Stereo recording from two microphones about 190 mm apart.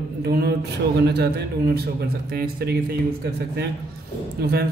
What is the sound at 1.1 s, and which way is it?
A man's voice, 55° right (ahead or behind).